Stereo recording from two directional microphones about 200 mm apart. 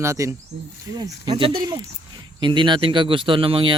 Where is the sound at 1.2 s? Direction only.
25° right (ahead or behind).